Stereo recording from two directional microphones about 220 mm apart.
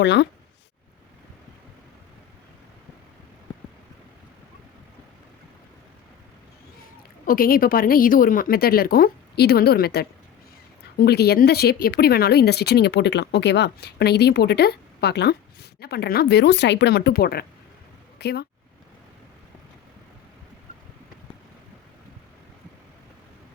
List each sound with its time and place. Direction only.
0.0 s speech: 50° left (ahead or behind)
7.3 s a woman's voice: 40° left (ahead or behind)